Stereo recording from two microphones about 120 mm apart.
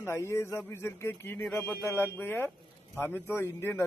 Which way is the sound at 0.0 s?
25° left (ahead or behind).